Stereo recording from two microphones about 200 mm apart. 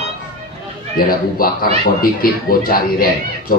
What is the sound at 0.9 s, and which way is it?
Speech, 45° left (ahead or behind).